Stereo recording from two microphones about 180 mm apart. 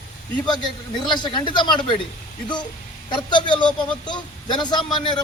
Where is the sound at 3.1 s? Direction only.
25° left (ahead or behind).